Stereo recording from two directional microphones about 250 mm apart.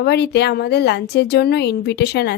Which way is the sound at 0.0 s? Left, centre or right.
Left.